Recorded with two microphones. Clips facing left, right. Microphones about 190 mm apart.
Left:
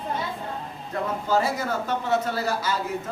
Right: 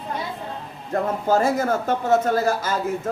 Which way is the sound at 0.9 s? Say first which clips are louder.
Right 4 dB; 50° right (ahead or behind).